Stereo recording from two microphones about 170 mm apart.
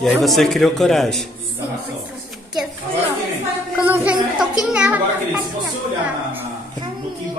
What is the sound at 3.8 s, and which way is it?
Music, 10° right (ahead or behind).